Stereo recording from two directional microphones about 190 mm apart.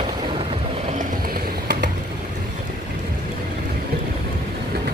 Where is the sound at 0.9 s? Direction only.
50° right (ahead or behind).